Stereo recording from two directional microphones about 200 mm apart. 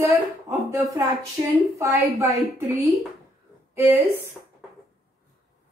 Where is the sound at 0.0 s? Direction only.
15° right (ahead or behind).